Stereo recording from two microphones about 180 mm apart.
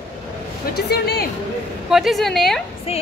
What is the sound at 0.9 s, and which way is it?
Speech, 60° left (ahead or behind).